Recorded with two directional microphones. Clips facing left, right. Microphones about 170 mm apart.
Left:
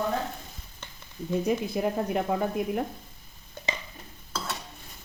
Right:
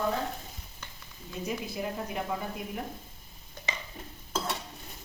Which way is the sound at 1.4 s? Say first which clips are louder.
Left 6 dB; 55° left (ahead or behind).